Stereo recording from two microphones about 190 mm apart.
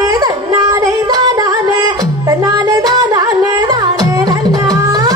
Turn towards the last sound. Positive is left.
turn(degrees=-20)  # may be behind; listen again after turning